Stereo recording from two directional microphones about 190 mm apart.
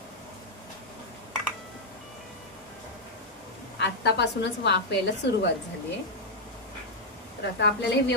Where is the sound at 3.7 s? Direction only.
65° left (ahead or behind).